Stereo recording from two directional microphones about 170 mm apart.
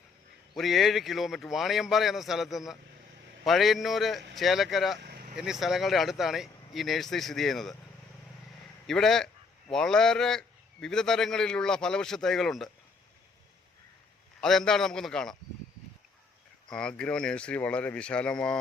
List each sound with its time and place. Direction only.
0.5 s a man's voice: centre (ahead or behind)
4.9 s vehicle: 70° right (ahead or behind)
5.4 s a man's voice: centre (ahead or behind)
8.9 s a man's voice: centre (ahead or behind)
14.4 s a man's voice: 5° left (ahead or behind)
16.6 s speech: 5° left (ahead or behind)